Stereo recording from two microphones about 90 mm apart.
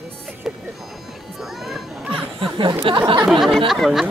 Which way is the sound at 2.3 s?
65° right (ahead or behind).